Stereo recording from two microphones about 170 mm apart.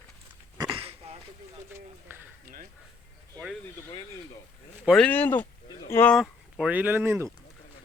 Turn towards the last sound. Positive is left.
turn(degrees=-15)  # may be behind; listen again after turning